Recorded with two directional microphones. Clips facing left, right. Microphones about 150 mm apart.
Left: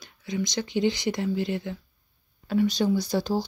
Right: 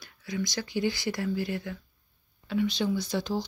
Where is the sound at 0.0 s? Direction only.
20° left (ahead or behind).